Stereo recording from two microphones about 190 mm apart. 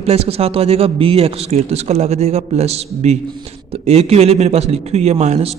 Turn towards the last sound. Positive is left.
turn(degrees=-35)  # may be behind; listen again after turning